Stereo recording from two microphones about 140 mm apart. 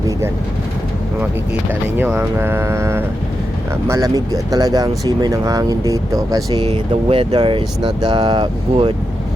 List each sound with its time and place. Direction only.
2.0 s speech: 10° right (ahead or behind)
6.6 s speech: 40° right (ahead or behind)